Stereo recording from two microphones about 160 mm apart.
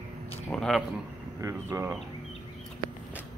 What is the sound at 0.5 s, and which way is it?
Speech, 5° left (ahead or behind).